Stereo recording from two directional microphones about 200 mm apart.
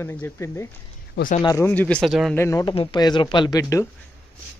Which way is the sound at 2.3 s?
15° left (ahead or behind).